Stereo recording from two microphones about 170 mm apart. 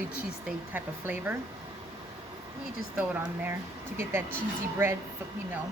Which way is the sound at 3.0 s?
10° right (ahead or behind).